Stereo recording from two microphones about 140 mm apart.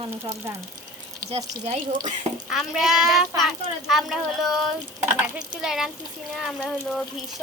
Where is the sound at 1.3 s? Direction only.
45° right (ahead or behind).